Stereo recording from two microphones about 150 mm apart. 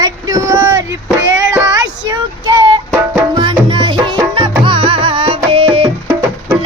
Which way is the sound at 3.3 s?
30° right (ahead or behind).